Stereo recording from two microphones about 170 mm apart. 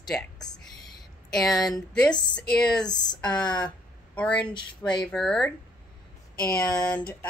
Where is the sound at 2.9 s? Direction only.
25° left (ahead or behind).